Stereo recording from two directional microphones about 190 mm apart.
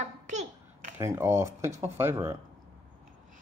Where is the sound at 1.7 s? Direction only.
35° right (ahead or behind).